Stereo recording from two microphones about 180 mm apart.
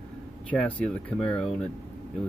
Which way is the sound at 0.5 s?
10° left (ahead or behind).